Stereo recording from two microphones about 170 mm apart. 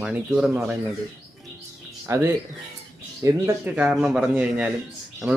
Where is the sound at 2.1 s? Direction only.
20° right (ahead or behind).